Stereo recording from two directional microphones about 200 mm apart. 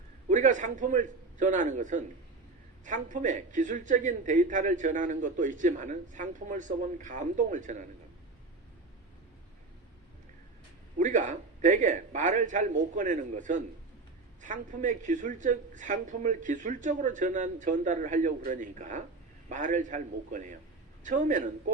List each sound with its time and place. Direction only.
0.3 s a man's voice: 40° right (ahead or behind)
10.9 s a man's voice: 40° right (ahead or behind)